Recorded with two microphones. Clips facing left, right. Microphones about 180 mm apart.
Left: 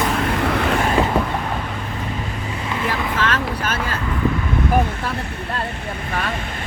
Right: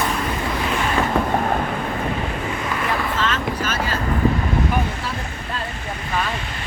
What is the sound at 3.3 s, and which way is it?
Boat, 55° left (ahead or behind).